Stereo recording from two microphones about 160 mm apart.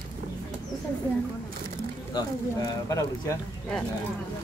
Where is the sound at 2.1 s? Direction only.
20° left (ahead or behind).